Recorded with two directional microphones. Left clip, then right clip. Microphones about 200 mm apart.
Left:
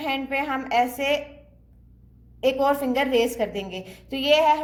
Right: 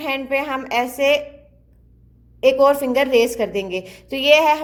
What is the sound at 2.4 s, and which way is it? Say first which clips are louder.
A woman's voice: right 7 dB; 25° right (ahead or behind).